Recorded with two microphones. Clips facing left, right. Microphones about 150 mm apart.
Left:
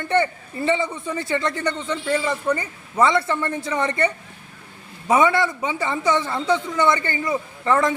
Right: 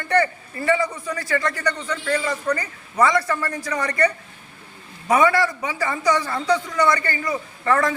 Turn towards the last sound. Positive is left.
turn(degrees=20)  # may be behind; listen again after turning